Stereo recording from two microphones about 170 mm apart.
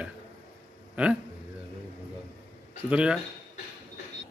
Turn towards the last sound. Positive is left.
turn(degrees=-5)  # may be behind; listen again after turning